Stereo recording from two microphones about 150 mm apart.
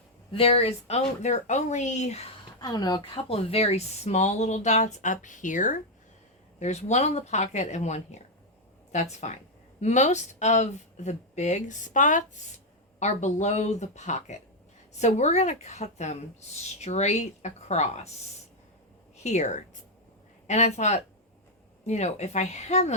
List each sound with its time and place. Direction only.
0.3 s speech: 40° left (ahead or behind)
2.6 s speech: 25° left (ahead or behind); by 18.1 s 50° left (ahead or behind)
19.1 s a woman's voice: 50° left (ahead or behind)